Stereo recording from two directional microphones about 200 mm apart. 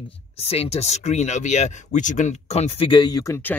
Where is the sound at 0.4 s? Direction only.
30° left (ahead or behind).